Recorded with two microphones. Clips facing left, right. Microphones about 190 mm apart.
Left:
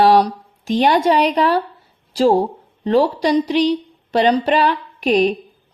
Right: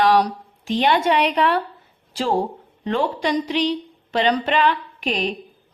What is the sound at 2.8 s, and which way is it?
A woman's voice, 35° left (ahead or behind).